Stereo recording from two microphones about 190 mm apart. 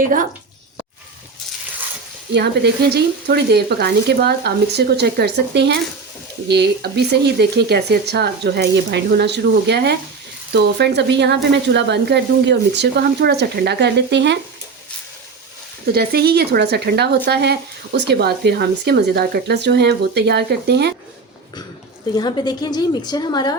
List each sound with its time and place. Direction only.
0.0 s speech: 45° right (ahead or behind)
2.3 s speech: 60° right (ahead or behind)
15.9 s speech: 55° right (ahead or behind)
22.1 s a woman's voice: 20° left (ahead or behind)